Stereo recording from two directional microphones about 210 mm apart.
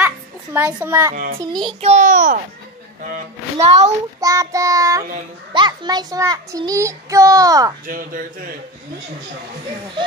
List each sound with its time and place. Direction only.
0.0 s a sound: 10° right (ahead or behind)
1.1 s speech: 40° right (ahead or behind)
1.4 s child singing: 20° right (ahead or behind)
1.8 s speech: 35° right (ahead or behind)
4.2 s a child's voice: 15° right (ahead or behind)
7.8 s speech: 40° right (ahead or behind)